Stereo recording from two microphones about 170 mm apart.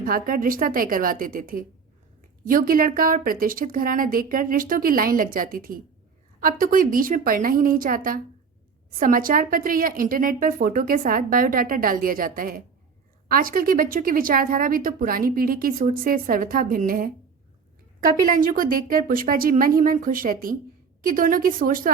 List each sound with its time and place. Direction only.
0.0 s speech: 55° right (ahead or behind)